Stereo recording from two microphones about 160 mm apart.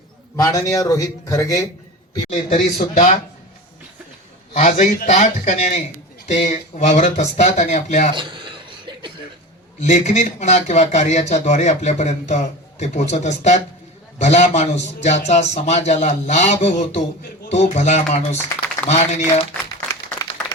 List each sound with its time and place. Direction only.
0.3 s a man's voice: 20° left (ahead or behind)
2.3 s a man's voice: 50° left (ahead or behind)
4.5 s a man's voice: 55° left (ahead or behind)
8.1 s a sound: 30° right (ahead or behind)
9.8 s a man's voice: 45° left (ahead or behind)